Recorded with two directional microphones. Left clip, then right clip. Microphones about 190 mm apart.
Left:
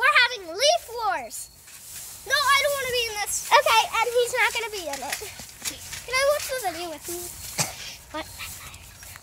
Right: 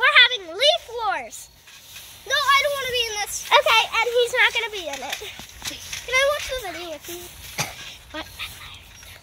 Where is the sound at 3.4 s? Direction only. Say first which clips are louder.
Right 2 dB; 5° right (ahead or behind).